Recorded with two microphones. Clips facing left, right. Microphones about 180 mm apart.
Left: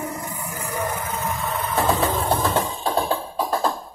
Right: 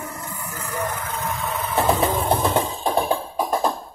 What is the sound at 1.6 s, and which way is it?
Vehicle, 20° right (ahead or behind).